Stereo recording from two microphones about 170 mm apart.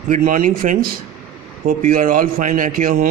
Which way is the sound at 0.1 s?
55° right (ahead or behind).